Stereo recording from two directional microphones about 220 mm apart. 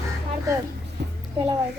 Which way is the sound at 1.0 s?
50° right (ahead or behind).